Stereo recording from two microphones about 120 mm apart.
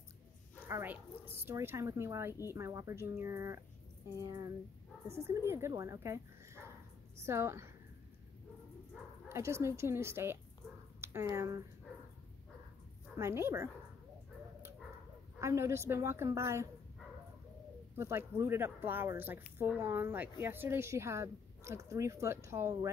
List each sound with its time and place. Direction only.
0.7 s speech: 20° right (ahead or behind)
9.3 s speech: 20° right (ahead or behind)
13.2 s speech: 20° right (ahead or behind)
15.3 s speech: 25° right (ahead or behind)
17.9 s speech: 20° right (ahead or behind)